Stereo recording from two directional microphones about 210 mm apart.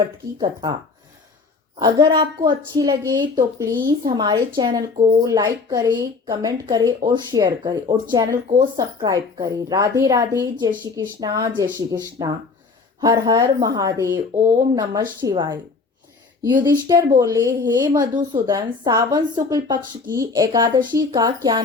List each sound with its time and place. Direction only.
0.3 s a woman's voice: 20° right (ahead or behind)
1.8 s a woman's voice: 20° right (ahead or behind)
16.6 s a woman's voice: 15° right (ahead or behind)